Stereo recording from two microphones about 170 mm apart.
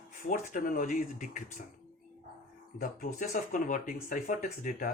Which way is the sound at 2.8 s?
50° left (ahead or behind).